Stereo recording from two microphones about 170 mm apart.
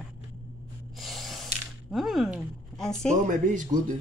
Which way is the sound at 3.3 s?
50° right (ahead or behind).